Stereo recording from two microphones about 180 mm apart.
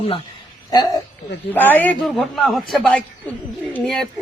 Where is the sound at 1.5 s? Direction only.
10° left (ahead or behind).